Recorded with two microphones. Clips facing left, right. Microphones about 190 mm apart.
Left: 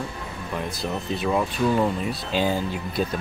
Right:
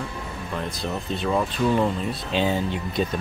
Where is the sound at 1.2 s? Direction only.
5° left (ahead or behind).